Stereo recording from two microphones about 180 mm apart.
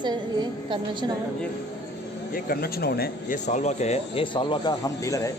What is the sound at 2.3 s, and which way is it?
Speech, 55° left (ahead or behind).